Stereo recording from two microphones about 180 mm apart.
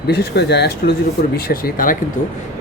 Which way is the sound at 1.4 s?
55° left (ahead or behind).